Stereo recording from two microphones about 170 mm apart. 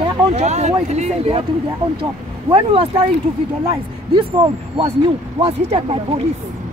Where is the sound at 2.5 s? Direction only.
30° right (ahead or behind).